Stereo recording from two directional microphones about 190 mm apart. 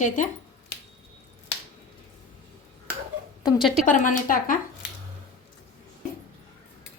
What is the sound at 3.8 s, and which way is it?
Speech, 45° left (ahead or behind).